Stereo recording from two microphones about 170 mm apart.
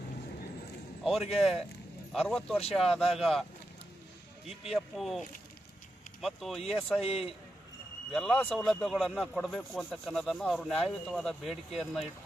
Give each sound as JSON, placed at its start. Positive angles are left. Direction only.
{"t": 1.0, "sound": "speech", "side_deg": 0}
{"t": 4.7, "sound": "speech", "side_deg": 0}
{"t": 6.2, "sound": "speech", "side_deg": 0}
{"t": 7.0, "sound": "a man's voice", "side_deg": 35}
{"t": 8.1, "sound": "speech", "side_deg": 0}